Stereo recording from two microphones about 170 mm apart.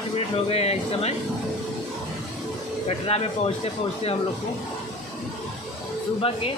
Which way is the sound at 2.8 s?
35° left (ahead or behind).